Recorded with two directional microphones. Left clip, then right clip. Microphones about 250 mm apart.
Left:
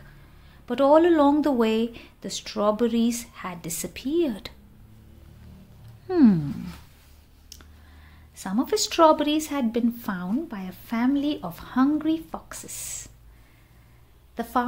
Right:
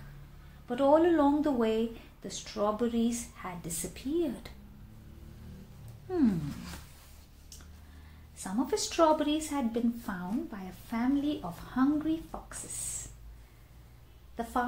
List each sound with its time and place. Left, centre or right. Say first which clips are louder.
0.7 s a woman's voice: left 7 dB; left
6.0 s a sound: left 10 dB; left
8.4 s a woman's voice: left 7 dB; left